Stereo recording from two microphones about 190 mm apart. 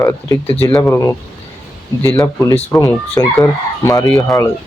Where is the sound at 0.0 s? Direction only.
15° left (ahead or behind).